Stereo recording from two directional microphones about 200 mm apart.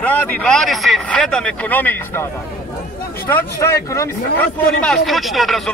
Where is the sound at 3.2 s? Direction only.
15° left (ahead or behind).